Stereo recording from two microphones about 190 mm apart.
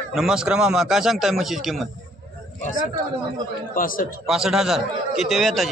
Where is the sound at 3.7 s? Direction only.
45° left (ahead or behind).